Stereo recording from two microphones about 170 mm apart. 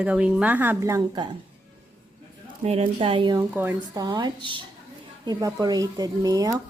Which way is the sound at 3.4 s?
10° right (ahead or behind).